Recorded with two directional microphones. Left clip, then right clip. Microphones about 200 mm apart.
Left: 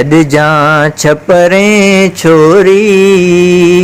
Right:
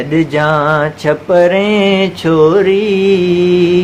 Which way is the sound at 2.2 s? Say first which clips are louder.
Left 5 dB; 35° left (ahead or behind).